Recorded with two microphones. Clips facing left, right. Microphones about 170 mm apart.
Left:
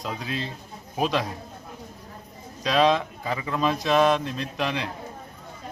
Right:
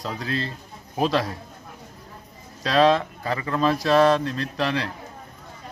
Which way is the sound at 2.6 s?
15° left (ahead or behind).